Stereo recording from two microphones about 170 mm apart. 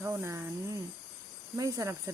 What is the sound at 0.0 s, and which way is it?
Speech, 15° right (ahead or behind).